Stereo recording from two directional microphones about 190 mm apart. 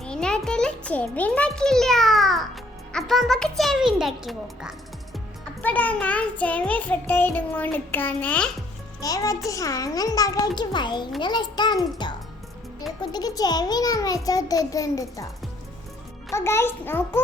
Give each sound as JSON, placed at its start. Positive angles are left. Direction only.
{"t": 0.0, "sound": "a child's voice", "side_deg": 5}
{"t": 5.6, "sound": "child singing", "side_deg": 10}
{"t": 9.0, "sound": "a child's voice", "side_deg": 20}
{"t": 16.3, "sound": "child singing", "side_deg": 15}